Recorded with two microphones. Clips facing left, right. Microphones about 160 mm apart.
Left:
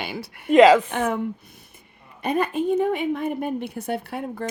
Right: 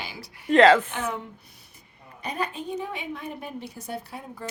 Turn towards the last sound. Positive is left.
turn(degrees=65)  # may be behind; listen again after turning